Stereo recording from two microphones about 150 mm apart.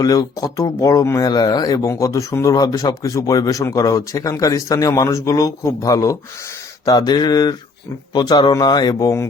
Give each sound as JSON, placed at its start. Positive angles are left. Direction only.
{"t": 0.0, "sound": "speech", "side_deg": 25}